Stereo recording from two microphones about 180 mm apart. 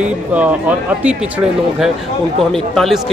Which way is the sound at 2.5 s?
Centre (ahead or behind).